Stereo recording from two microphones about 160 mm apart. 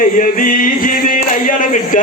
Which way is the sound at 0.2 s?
55° left (ahead or behind).